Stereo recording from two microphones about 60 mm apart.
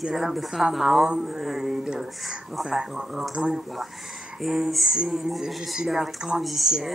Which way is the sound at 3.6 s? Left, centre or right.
Centre.